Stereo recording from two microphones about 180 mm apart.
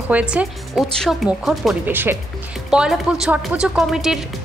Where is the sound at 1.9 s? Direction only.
10° right (ahead or behind).